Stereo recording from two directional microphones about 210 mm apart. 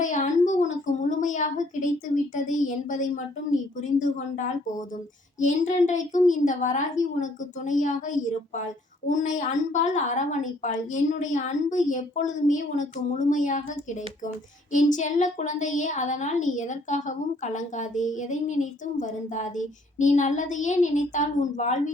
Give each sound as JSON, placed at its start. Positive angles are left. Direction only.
{"t": 0.0, "sound": "a sound", "side_deg": 35}
{"t": 3.5, "sound": "a woman's voice", "side_deg": 35}
{"t": 14.7, "sound": "a woman's voice", "side_deg": 35}